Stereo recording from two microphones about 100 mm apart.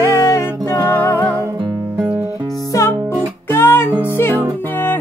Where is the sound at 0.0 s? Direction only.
25° left (ahead or behind).